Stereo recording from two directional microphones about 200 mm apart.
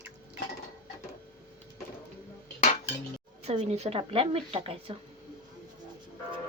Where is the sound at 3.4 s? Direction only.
30° right (ahead or behind).